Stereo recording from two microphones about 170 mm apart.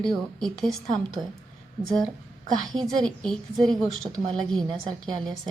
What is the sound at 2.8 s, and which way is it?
A woman's voice, 5° left (ahead or behind).